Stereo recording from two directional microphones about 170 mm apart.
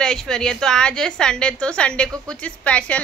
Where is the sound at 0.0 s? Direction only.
5° left (ahead or behind).